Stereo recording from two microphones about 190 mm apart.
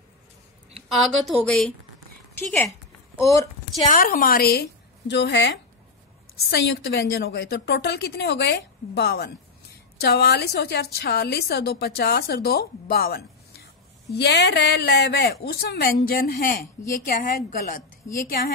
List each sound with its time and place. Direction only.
1.0 s a woman's voice: centre (ahead or behind)
3.9 s a woman's voice: 50° left (ahead or behind); by 5.5 s 65° left (ahead or behind)
6.5 s a woman's voice: 70° left (ahead or behind); by 18.5 s 50° left (ahead or behind)